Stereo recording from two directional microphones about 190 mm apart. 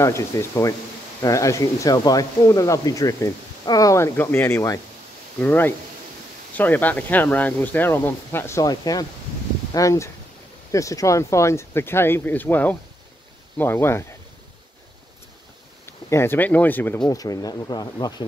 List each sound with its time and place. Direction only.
0.0 s speech: 15° left (ahead or behind)
15.8 s speech: 15° left (ahead or behind)